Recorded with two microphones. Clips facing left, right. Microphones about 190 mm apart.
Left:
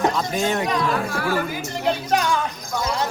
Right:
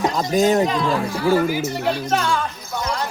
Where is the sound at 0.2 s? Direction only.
40° right (ahead or behind).